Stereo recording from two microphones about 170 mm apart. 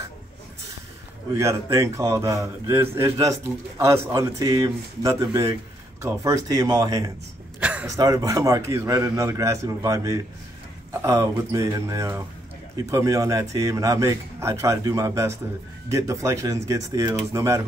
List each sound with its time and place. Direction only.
1.3 s a man's voice: 15° right (ahead or behind)
7.6 s a sound: 5° right (ahead or behind)
7.9 s a man's voice: 20° right (ahead or behind)